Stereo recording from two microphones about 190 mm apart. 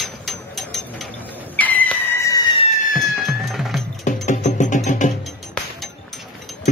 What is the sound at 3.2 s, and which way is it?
Music, centre (ahead or behind).